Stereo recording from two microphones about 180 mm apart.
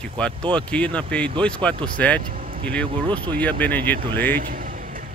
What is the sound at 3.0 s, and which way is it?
Speech, 25° right (ahead or behind).